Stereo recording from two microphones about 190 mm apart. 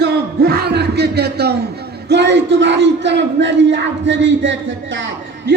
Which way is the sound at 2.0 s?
65° right (ahead or behind).